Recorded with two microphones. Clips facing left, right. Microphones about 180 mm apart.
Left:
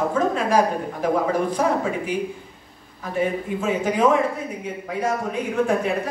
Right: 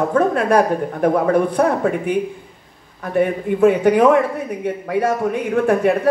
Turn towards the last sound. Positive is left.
turn(degrees=-60)  # may be behind; listen again after turning